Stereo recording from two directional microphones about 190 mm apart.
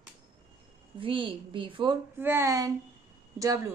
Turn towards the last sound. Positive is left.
turn(degrees=-20)  # may be behind; listen again after turning